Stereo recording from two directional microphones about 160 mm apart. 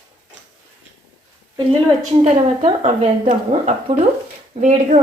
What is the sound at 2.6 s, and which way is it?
Speech, 40° right (ahead or behind).